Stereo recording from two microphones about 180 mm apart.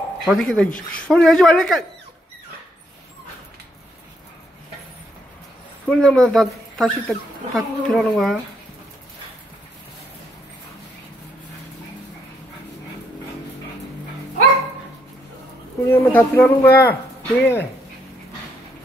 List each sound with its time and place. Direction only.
0.2 s speech: centre (ahead or behind)
5.9 s speech: 5° left (ahead or behind)
15.9 s speech: 10° left (ahead or behind)